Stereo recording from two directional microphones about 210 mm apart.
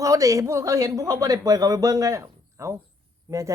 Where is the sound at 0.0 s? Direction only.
15° right (ahead or behind).